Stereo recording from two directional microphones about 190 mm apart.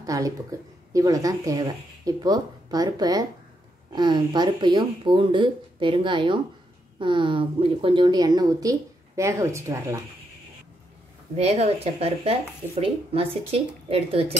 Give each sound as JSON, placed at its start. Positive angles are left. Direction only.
{"t": 0.0, "sound": "speech", "side_deg": -20}
{"t": 11.3, "sound": "speech", "side_deg": -35}